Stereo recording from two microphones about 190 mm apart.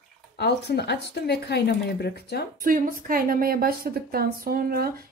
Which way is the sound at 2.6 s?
45° right (ahead or behind).